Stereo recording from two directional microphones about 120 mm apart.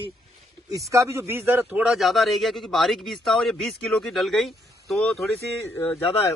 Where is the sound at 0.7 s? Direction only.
25° right (ahead or behind); by 5.2 s centre (ahead or behind).